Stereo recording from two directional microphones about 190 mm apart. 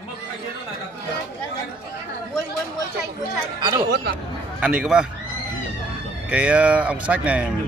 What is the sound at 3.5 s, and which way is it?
Speech, 20° right (ahead or behind).